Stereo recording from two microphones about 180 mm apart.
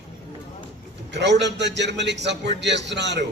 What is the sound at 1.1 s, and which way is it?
A man's voice, 75° right (ahead or behind).